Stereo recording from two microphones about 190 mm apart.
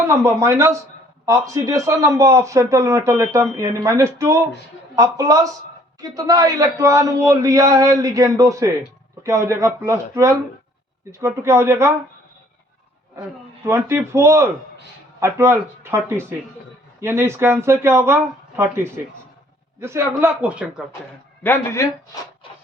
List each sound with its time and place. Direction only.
0.1 s speech: 15° right (ahead or behind)
13.7 s speech: 15° right (ahead or behind)
21.4 s speech: 15° left (ahead or behind)